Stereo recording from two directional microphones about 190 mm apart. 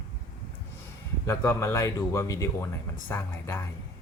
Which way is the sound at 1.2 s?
15° left (ahead or behind).